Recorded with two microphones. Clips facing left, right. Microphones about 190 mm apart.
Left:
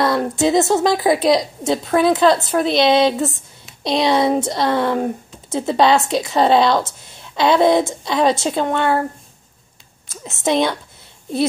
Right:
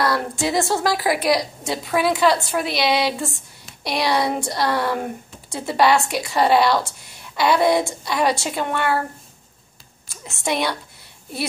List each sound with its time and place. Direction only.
0.0 s speech: 20° left (ahead or behind)
10.2 s speech: 20° left (ahead or behind)